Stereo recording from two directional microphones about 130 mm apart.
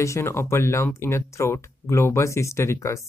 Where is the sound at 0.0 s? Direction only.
20° left (ahead or behind).